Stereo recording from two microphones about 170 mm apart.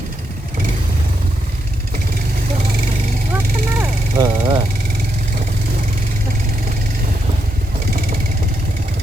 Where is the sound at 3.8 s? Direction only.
15° right (ahead or behind).